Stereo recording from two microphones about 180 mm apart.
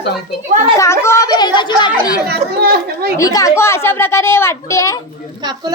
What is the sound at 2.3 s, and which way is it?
Speech, 60° right (ahead or behind).